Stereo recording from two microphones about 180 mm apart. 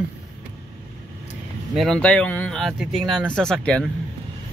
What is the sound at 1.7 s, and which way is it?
Speech, 5° left (ahead or behind).